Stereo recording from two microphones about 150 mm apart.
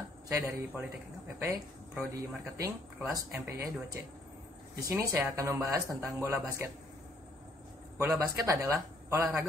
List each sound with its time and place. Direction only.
0.3 s speech: 20° right (ahead or behind)
2.1 s speech: 20° right (ahead or behind)
8.0 s speech: 20° right (ahead or behind)